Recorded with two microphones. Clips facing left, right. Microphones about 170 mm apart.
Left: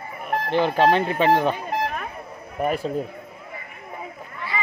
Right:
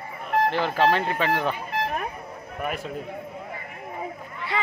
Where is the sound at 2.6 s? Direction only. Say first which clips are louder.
Left 7 dB; 35° left (ahead or behind).